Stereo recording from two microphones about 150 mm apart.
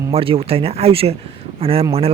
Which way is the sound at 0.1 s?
40° right (ahead or behind).